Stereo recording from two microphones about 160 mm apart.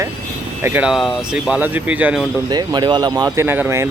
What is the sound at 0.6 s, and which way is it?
Speech, 10° right (ahead or behind).